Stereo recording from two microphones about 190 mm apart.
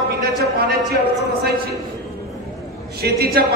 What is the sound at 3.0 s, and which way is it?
Speech, 55° right (ahead or behind).